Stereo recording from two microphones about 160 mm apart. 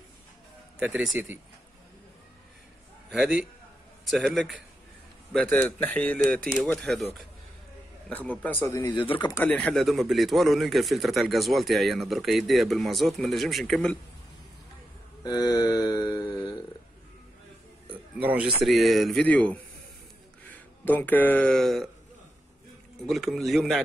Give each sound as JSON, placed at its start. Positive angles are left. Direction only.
{"t": 0.7, "sound": "speech", "side_deg": -5}
{"t": 3.1, "sound": "a man's voice", "side_deg": -5}
{"t": 8.1, "sound": "speech", "side_deg": 10}
{"t": 8.8, "sound": "speech", "side_deg": 30}
{"t": 9.3, "sound": "speech", "side_deg": 10}
{"t": 15.2, "sound": "a sound", "side_deg": 25}
{"t": 18.2, "sound": "speech", "side_deg": -10}
{"t": 23.0, "sound": "speech", "side_deg": 0}